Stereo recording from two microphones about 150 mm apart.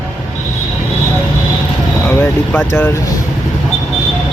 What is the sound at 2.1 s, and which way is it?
Speech, 15° left (ahead or behind).